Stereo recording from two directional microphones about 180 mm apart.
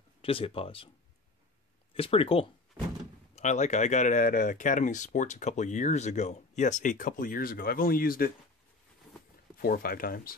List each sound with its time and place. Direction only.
0.2 s speech: 30° left (ahead or behind)
2.0 s speech: 30° left (ahead or behind); by 8.3 s 55° left (ahead or behind)
9.6 s speech: 55° left (ahead or behind)